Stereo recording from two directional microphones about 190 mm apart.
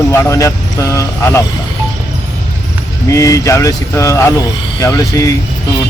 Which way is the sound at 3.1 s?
15° left (ahead or behind).